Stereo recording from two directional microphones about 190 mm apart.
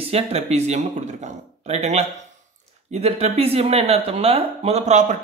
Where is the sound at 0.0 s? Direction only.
35° right (ahead or behind).